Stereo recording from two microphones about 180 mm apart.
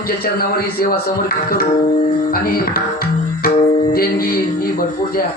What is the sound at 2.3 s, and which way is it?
Speech, 55° left (ahead or behind).